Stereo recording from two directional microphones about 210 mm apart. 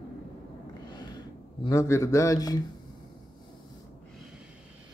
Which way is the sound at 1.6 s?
15° left (ahead or behind).